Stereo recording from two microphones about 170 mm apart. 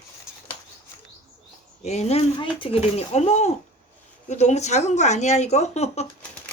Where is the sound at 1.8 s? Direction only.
40° left (ahead or behind).